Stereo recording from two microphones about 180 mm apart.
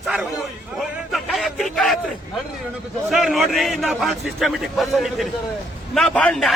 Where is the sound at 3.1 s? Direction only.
Centre (ahead or behind).